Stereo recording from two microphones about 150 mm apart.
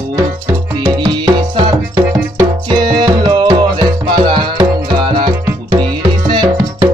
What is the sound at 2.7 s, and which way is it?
Music, 30° right (ahead or behind).